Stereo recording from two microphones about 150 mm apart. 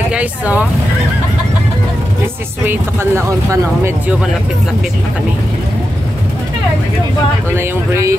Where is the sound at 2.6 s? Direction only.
15° right (ahead or behind).